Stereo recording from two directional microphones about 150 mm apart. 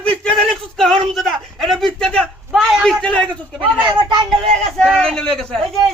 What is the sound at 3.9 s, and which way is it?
Speech, 30° right (ahead or behind).